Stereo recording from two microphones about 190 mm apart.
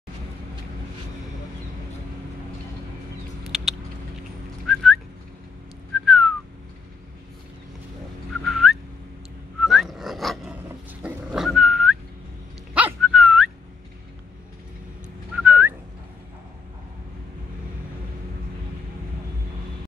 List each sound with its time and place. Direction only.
3.4 s a sound: centre (ahead or behind)
4.7 s whistling: centre (ahead or behind)
6.0 s whistling: centre (ahead or behind)
8.5 s turkey: centre (ahead or behind)
9.6 s dog: centre (ahead or behind)
15.3 s whistling: 10° right (ahead or behind)